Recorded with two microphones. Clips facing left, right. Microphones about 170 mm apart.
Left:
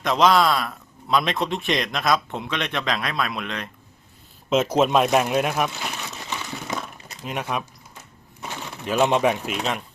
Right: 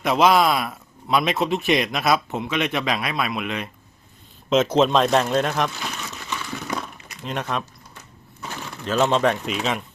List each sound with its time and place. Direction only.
0.0 s speech: 10° right (ahead or behind)
4.4 s speech: 5° left (ahead or behind)
7.3 s speech: 10° left (ahead or behind)
8.8 s speech: 15° left (ahead or behind)